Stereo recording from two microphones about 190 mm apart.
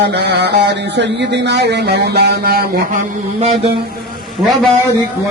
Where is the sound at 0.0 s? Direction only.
65° right (ahead or behind).